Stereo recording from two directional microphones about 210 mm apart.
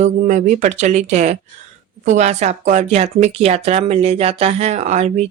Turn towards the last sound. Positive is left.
turn(degrees=-30)  # may be behind; listen again after turning